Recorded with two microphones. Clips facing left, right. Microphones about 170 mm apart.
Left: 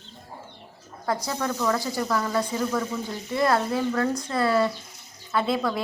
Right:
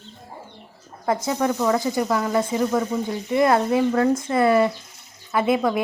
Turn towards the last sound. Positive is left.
turn(degrees=-15)  # may be behind; listen again after turning